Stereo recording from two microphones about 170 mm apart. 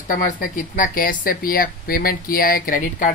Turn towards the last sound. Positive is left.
turn(degrees=55)  # may be behind; listen again after turning